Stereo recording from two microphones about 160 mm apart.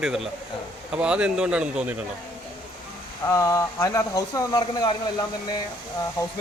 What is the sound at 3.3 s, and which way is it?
Speech, 20° left (ahead or behind).